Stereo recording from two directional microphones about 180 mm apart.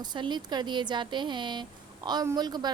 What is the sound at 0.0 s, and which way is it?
A woman's voice, 25° right (ahead or behind).